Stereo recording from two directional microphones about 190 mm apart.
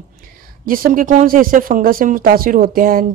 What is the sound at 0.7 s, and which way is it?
Speech, 50° right (ahead or behind).